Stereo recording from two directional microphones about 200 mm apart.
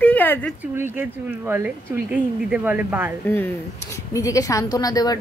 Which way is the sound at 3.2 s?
10° left (ahead or behind).